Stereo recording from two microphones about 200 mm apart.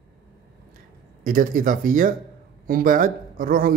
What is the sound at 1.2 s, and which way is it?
A man's voice, 45° right (ahead or behind).